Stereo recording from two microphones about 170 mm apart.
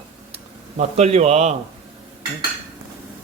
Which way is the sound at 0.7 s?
40° right (ahead or behind).